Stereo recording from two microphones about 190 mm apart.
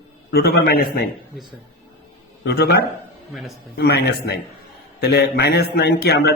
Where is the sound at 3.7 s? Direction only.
60° left (ahead or behind).